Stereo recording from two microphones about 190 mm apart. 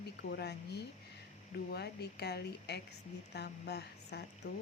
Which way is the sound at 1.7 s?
60° left (ahead or behind).